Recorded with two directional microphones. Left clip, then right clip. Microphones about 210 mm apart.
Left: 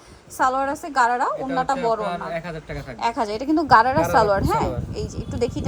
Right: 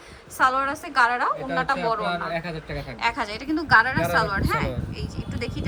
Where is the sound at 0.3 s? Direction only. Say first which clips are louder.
Even; 20° left (ahead or behind).